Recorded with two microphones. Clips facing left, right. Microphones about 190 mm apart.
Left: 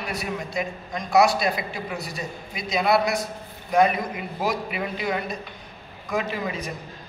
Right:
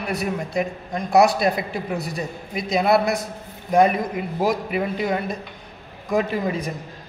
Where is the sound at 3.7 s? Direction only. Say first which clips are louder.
Right 3 dB; 40° right (ahead or behind).